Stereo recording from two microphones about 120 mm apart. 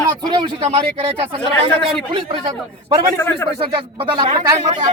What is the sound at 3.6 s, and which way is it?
Speech, 45° right (ahead or behind).